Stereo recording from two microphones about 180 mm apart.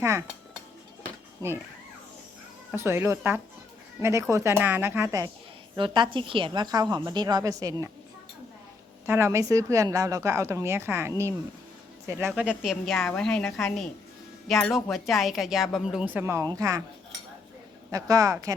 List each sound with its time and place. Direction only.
0.0 s dishes: 15° right (ahead or behind)
1.4 s a woman's voice: 20° right (ahead or behind)
2.7 s a woman's voice: 15° right (ahead or behind)
5.7 s a woman's voice: 25° right (ahead or behind)
9.0 s a woman's voice: 15° right (ahead or behind)
17.9 s a woman's voice: 20° right (ahead or behind)